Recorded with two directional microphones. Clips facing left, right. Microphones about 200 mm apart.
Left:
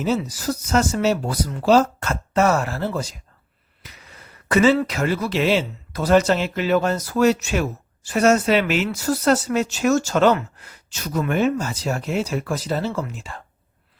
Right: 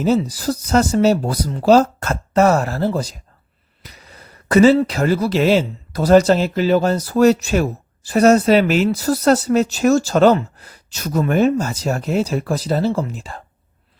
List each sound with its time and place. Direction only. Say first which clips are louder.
0.0 s speech: right 5 dB; 35° right (ahead or behind)
3.8 s a sound: right 3 dB; 35° right (ahead or behind)
4.4 s speech: right 5 dB; 40° right (ahead or behind)